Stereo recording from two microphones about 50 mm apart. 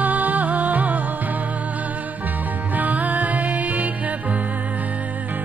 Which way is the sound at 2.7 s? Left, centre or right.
Right.